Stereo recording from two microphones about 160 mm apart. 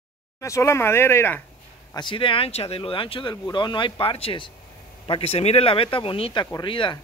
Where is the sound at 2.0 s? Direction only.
30° left (ahead or behind).